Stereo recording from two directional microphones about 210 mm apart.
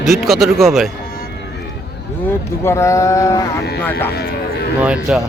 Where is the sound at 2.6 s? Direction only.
15° left (ahead or behind).